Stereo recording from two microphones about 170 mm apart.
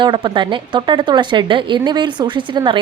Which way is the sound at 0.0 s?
30° right (ahead or behind).